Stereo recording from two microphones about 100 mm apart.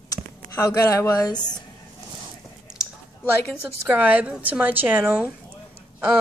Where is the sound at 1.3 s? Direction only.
45° left (ahead or behind).